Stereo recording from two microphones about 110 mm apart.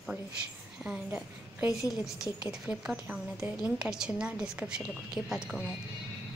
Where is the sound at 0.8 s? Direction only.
15° right (ahead or behind).